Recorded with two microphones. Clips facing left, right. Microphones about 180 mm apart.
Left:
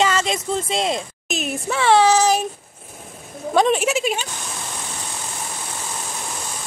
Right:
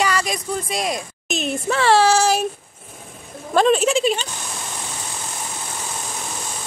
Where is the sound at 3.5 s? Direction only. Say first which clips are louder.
Right 2 dB; 15° left (ahead or behind).